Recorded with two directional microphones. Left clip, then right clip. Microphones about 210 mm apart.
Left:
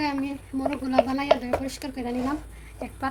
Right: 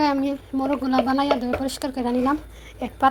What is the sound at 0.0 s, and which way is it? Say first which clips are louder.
A woman's voice: right 7 dB; 25° right (ahead or behind).